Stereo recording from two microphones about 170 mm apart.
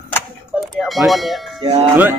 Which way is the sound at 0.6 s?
Centre (ahead or behind).